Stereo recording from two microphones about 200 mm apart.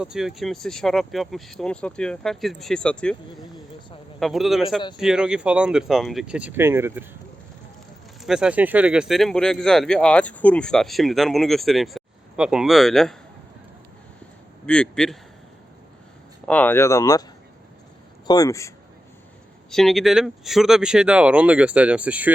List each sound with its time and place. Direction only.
0.0 s speech: 5° right (ahead or behind)
8.2 s speech: 5° right (ahead or behind)
14.7 s speech: 5° left (ahead or behind)
16.5 s speech: 10° left (ahead or behind)
18.3 s speech: 15° left (ahead or behind)
19.7 s speech: centre (ahead or behind)